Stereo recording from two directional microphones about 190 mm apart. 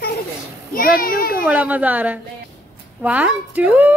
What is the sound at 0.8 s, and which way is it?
Speech, 50° left (ahead or behind).